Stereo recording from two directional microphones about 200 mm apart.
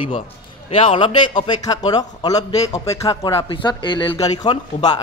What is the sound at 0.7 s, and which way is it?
A man's voice, 30° left (ahead or behind).